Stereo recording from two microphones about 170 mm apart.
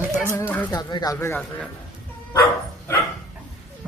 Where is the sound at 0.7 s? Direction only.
25° left (ahead or behind).